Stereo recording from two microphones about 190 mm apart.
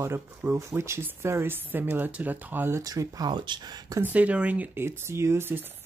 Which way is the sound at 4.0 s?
10° right (ahead or behind).